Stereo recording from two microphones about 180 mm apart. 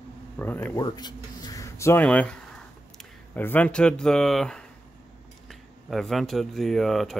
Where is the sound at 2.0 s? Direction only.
5° left (ahead or behind).